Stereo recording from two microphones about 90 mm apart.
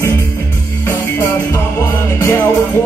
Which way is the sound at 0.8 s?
30° left (ahead or behind).